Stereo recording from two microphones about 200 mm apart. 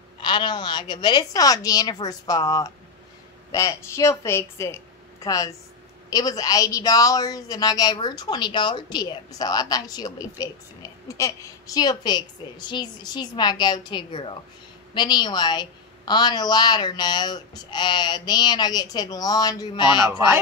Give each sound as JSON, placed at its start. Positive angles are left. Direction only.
{"t": 0.2, "sound": "a woman's voice", "side_deg": 25}